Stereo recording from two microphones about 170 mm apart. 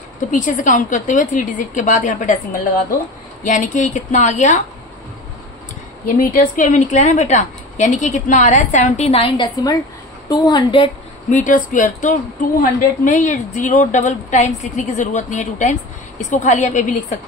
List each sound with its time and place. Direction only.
0.3 s speech: 50° left (ahead or behind)
3.4 s speech: 45° left (ahead or behind)
6.0 s speech: 50° left (ahead or behind)
10.3 s a woman's voice: 25° left (ahead or behind)
11.2 s speech: 45° left (ahead or behind)